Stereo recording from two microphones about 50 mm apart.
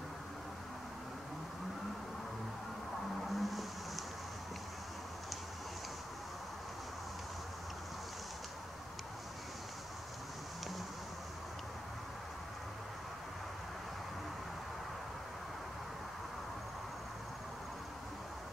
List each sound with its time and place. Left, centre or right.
3.3 s vehicle: centre